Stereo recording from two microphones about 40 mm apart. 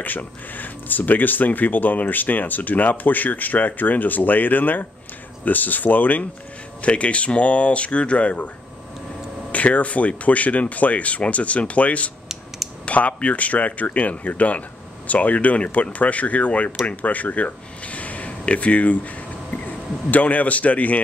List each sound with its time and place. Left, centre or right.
0.0 s speech: left
6.8 s speech: left
9.5 s speech: left